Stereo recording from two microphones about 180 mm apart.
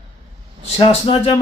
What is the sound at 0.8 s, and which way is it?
Speech, 30° left (ahead or behind).